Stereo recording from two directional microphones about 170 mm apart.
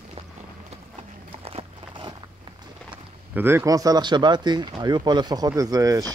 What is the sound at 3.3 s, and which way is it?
Speech, 10° right (ahead or behind).